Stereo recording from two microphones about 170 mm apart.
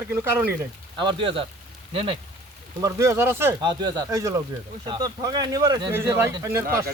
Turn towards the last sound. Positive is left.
turn(degrees=-15)  # may be behind; listen again after turning